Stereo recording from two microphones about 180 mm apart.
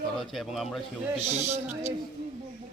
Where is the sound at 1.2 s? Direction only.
35° right (ahead or behind).